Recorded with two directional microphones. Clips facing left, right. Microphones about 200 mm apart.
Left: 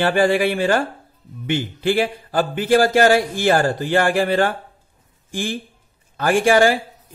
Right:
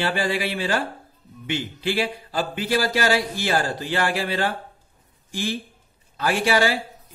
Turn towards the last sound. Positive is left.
turn(degrees=50)  # may be behind; listen again after turning